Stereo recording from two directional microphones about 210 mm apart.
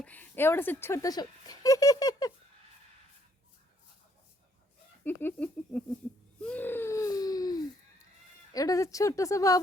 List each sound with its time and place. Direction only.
0.0 s speech: 10° left (ahead or behind)
5.0 s speech: 10° left (ahead or behind)
6.4 s a sound: 10° left (ahead or behind)
8.5 s speech: 15° left (ahead or behind)